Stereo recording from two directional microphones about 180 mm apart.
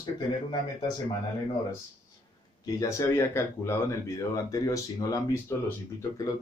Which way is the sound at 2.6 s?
20° left (ahead or behind).